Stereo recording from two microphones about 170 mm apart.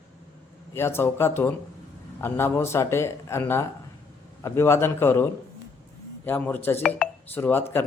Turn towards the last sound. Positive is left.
turn(degrees=15)  # may be behind; listen again after turning